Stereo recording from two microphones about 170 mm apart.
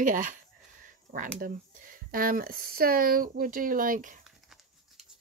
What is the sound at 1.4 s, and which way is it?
Speech, 55° right (ahead or behind).